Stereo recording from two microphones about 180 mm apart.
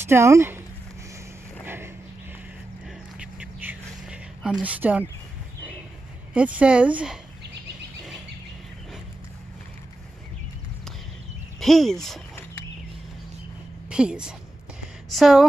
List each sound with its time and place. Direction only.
0.0 s speech: 15° right (ahead or behind)
1.6 s a sound: 10° right (ahead or behind)
3.2 s a sound: 10° right (ahead or behind)
6.3 s speech: 5° right (ahead or behind)
11.6 s speech: centre (ahead or behind)
13.8 s speech: 5° right (ahead or behind)